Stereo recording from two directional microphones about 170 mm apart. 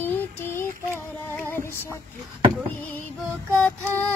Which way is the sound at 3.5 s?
10° left (ahead or behind).